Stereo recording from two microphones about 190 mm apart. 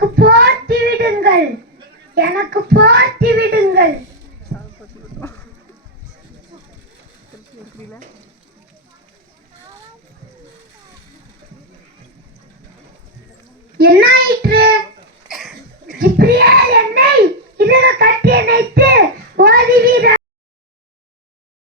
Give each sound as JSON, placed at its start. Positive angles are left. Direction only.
{"t": 0.2, "sound": "child singing", "side_deg": -55}
{"t": 13.7, "sound": "child singing", "side_deg": -55}
{"t": 15.3, "sound": "cough", "side_deg": 0}
{"t": 16.0, "sound": "a sound", "side_deg": -50}